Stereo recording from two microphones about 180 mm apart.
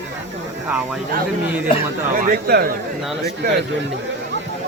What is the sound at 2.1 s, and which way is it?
Speech, 50° right (ahead or behind).